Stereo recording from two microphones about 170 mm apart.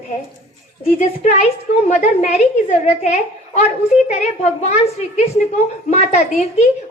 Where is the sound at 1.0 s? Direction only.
40° left (ahead or behind).